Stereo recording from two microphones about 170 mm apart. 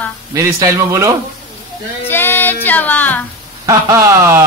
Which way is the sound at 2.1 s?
10° left (ahead or behind).